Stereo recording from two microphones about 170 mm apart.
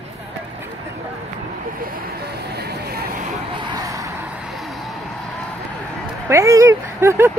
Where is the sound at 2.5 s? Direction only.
70° right (ahead or behind).